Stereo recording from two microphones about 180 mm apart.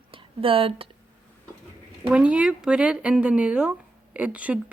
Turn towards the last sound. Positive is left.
turn(degrees=-10)  # may be behind; listen again after turning